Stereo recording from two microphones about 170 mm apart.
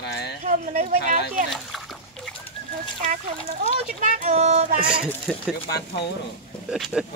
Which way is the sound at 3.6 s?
45° right (ahead or behind).